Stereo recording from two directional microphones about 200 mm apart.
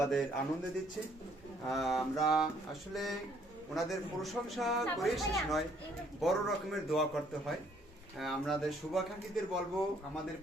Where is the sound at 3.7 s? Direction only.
Centre (ahead or behind).